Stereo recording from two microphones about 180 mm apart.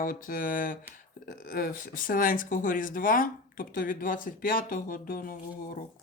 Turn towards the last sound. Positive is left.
turn(degrees=50)  # may be behind; listen again after turning